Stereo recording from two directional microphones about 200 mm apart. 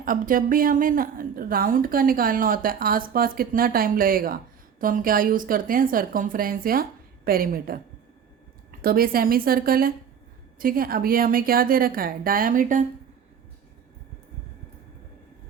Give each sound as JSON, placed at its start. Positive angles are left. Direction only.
{"t": 0.0, "sound": "speech", "side_deg": -45}
{"t": 8.8, "sound": "speech", "side_deg": -45}